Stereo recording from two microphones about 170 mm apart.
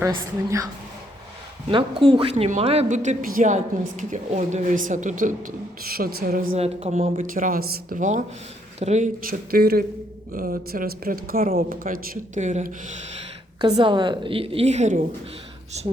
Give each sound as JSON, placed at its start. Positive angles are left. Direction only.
{"t": 1.7, "sound": "speech", "side_deg": -30}
{"t": 6.5, "sound": "a woman's voice", "side_deg": -35}
{"t": 7.2, "sound": "speech", "side_deg": -50}
{"t": 13.6, "sound": "a woman's voice", "side_deg": -25}